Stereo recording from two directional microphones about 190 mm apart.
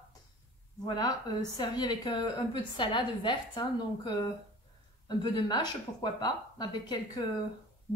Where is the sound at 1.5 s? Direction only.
20° left (ahead or behind).